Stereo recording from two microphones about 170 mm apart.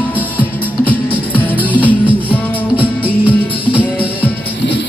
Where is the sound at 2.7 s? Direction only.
10° right (ahead or behind).